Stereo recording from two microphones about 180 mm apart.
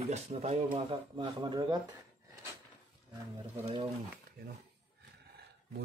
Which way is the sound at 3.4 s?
30° right (ahead or behind).